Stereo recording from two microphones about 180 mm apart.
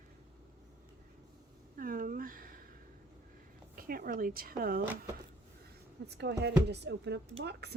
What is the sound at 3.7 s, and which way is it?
Speech, 55° right (ahead or behind).